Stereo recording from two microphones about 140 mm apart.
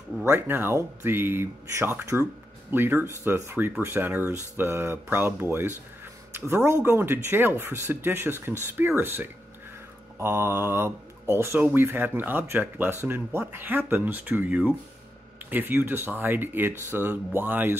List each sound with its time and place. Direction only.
0.2 s speech: 15° right (ahead or behind)